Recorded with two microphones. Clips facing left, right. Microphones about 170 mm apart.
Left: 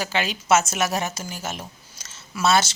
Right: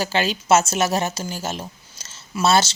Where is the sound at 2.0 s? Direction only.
30° right (ahead or behind).